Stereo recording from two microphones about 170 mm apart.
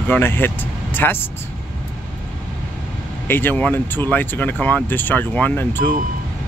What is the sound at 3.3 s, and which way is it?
Speech, 10° left (ahead or behind).